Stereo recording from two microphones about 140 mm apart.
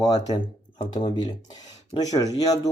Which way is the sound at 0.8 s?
40° left (ahead or behind).